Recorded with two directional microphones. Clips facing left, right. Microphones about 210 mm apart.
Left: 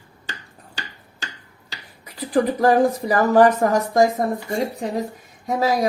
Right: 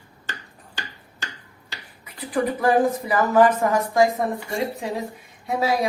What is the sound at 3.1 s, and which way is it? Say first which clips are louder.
Speech: left 2 dB; 40° left (ahead or behind).